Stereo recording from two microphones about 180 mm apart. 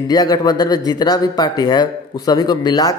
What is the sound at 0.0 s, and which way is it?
Speech, 20° left (ahead or behind).